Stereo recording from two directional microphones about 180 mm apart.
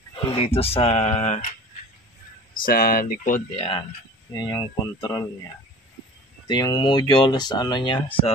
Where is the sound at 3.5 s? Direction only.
30° left (ahead or behind).